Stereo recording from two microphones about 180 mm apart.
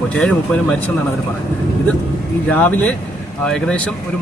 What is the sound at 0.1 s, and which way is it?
Speech, 5° left (ahead or behind).